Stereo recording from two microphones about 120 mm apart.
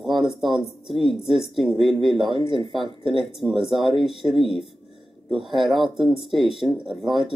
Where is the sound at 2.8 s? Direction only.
45° right (ahead or behind).